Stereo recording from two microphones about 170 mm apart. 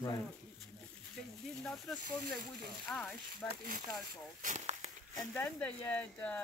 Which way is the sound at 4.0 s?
50° right (ahead or behind).